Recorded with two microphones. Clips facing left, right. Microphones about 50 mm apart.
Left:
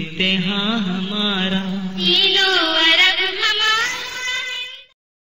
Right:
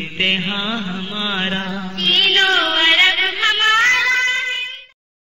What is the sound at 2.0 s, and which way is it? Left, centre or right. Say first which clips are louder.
Music: right 2 dB; right.